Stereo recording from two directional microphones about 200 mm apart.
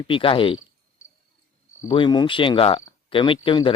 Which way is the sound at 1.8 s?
25° left (ahead or behind).